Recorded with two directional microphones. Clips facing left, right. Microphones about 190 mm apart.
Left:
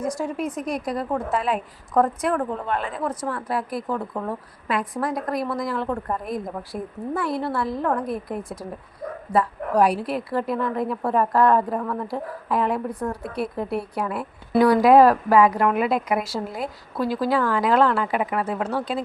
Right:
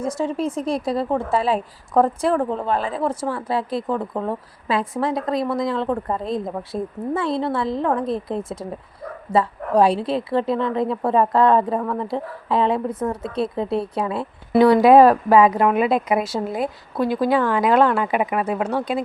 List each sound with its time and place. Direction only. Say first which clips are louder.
0.0 s a woman's voice: right 3 dB; 25° right (ahead or behind)